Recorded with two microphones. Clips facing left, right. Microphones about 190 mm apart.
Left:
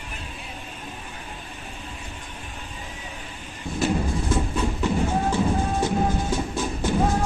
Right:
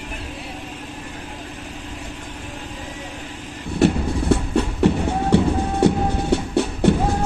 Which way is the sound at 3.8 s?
65° right (ahead or behind).